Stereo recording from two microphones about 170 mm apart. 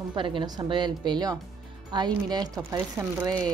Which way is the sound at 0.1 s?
30° right (ahead or behind).